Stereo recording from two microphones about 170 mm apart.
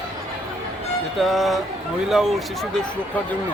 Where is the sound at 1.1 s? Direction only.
Centre (ahead or behind).